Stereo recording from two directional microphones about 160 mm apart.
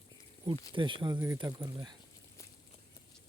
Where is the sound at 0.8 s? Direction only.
30° right (ahead or behind).